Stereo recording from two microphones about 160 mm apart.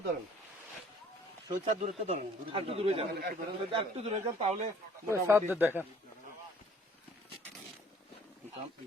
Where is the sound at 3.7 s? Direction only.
35° right (ahead or behind).